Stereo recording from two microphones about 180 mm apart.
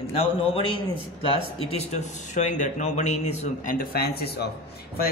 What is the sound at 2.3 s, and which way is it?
A man's voice, 45° left (ahead or behind).